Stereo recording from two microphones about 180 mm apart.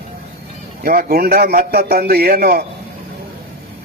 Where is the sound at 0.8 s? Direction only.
55° right (ahead or behind).